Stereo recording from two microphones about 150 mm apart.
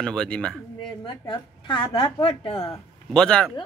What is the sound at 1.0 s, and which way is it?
A woman's voice, 35° left (ahead or behind).